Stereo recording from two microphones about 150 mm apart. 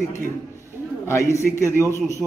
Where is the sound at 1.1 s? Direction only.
20° left (ahead or behind).